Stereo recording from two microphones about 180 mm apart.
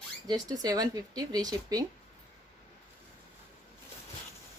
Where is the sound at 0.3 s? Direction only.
20° right (ahead or behind).